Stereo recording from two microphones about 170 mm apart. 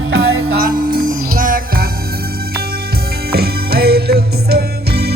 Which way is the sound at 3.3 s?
65° right (ahead or behind).